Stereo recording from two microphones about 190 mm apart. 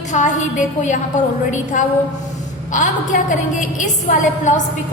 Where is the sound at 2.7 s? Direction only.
40° left (ahead or behind).